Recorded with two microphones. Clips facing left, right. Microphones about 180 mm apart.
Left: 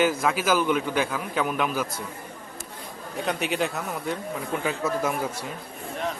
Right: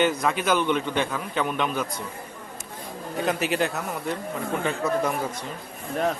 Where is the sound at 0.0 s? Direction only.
5° left (ahead or behind).